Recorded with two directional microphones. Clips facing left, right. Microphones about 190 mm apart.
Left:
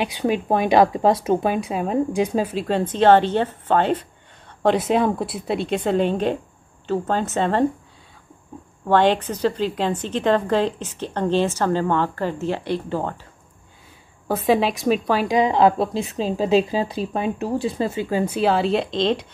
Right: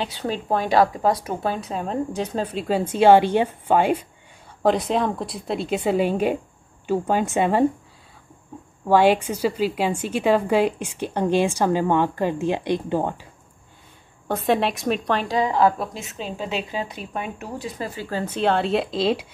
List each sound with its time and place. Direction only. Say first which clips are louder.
0.0 s speech: left 5 dB; 15° left (ahead or behind)
2.6 s a woman's voice: right 2 dB; 5° right (ahead or behind)
4.6 s a woman's voice: left 2 dB; 5° left (ahead or behind); by 7.6 s 10° right (ahead or behind)
8.8 s a woman's voice: right 1 dB; 10° right (ahead or behind)
14.2 s a woman's voice: left 2 dB; centre (ahead or behind)
15.2 s a woman's voice: left 3 dB; 20° left (ahead or behind); by 19.2 s 5° right (ahead or behind)